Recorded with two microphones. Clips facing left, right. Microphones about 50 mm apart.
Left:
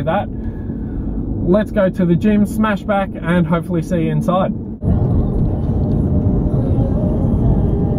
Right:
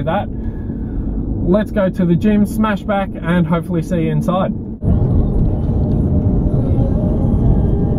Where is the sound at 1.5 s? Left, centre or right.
Centre.